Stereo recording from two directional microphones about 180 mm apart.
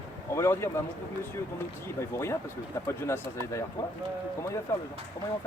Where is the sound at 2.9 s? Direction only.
15° left (ahead or behind).